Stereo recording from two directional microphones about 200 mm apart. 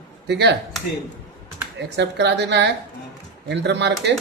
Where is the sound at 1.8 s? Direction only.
60° right (ahead or behind).